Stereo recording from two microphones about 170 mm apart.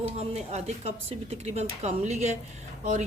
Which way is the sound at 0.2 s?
40° right (ahead or behind).